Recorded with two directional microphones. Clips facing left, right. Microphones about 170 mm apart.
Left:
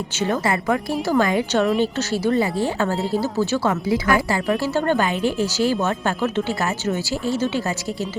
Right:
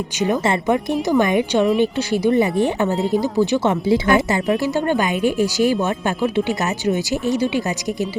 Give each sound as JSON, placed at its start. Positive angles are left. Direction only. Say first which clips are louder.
{"t": 0.2, "sound": "a woman's voice", "louder": "right 3 dB", "side_deg": -20}